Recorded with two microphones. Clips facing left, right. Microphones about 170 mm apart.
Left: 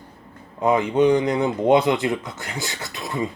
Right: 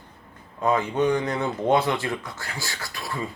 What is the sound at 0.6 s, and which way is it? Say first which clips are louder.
Speech: left 5 dB; 20° left (ahead or behind).